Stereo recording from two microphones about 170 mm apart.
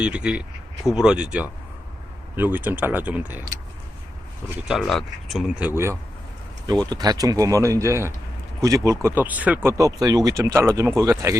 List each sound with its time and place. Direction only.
0.0 s speech: 5° right (ahead or behind)
4.7 s speech: centre (ahead or behind); by 11.3 s 15° right (ahead or behind)